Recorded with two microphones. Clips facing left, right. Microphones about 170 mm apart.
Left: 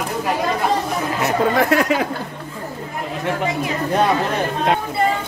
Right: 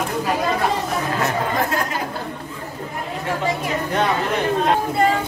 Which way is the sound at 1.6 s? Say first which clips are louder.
Left 6 dB; 75° left (ahead or behind).